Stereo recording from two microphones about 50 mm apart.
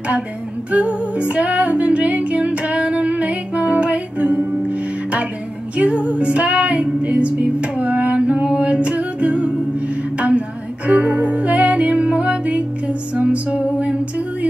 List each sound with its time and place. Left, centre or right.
0.7 s music: right
5.8 s music: right
10.1 s a sound: right
10.9 s music: right